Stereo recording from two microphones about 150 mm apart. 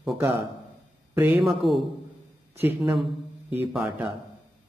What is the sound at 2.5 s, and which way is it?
A man's voice, 15° right (ahead or behind).